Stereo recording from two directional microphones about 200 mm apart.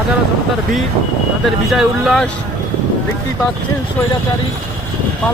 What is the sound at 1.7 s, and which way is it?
Speech, centre (ahead or behind).